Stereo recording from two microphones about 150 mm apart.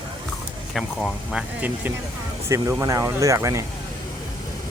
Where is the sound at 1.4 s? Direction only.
10° right (ahead or behind).